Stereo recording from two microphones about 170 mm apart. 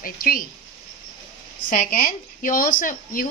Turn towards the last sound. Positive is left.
turn(degrees=55)  # may be behind; listen again after turning